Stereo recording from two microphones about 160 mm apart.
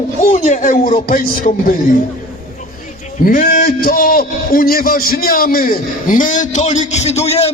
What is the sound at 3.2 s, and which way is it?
A man's voice, 55° left (ahead or behind).